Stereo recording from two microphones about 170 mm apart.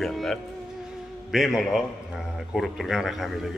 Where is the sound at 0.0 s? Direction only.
Centre (ahead or behind).